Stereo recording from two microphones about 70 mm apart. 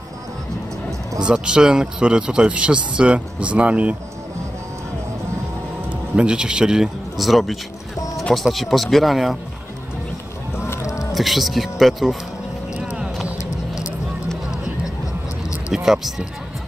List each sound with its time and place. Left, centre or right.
1.2 s speech: centre
6.1 s speech: centre
10.7 s music: left
11.1 s speech: centre
12.7 s vehicle: centre
15.7 s speech: centre